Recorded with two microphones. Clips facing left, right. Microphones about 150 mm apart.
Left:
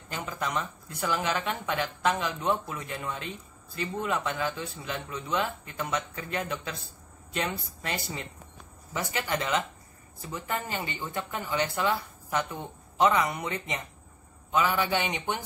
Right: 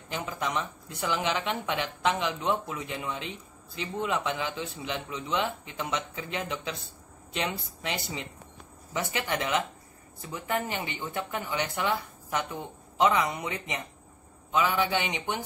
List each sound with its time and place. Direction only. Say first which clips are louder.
0.1 s speech: right 1 dB; 15° right (ahead or behind)